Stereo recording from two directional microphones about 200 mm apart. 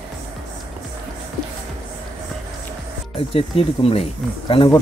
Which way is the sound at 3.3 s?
30° left (ahead or behind).